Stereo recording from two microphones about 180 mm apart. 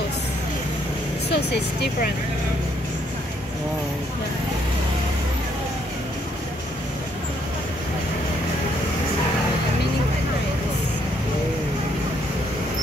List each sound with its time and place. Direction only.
1.3 s speech: 70° left (ahead or behind)